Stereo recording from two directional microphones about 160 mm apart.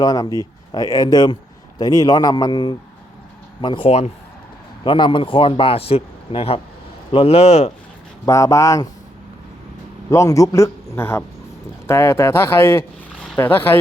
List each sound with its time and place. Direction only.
0.0 s speech: 25° left (ahead or behind); by 7.7 s 40° left (ahead or behind)
8.2 s speech: 20° left (ahead or behind)
10.1 s speech: 20° left (ahead or behind)
13.1 s a sound: centre (ahead or behind)
13.4 s speech: 15° left (ahead or behind)